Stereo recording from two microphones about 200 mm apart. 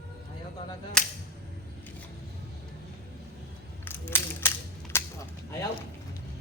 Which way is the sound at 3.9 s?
10° left (ahead or behind).